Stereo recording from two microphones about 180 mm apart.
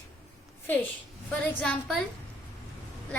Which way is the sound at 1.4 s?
5° left (ahead or behind).